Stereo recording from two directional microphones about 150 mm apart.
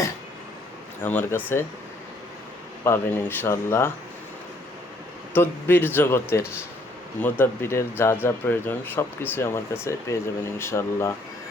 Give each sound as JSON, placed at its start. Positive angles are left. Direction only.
{"t": 1.0, "sound": "speech", "side_deg": 15}
{"t": 2.8, "sound": "speech", "side_deg": 15}
{"t": 5.3, "sound": "speech", "side_deg": 15}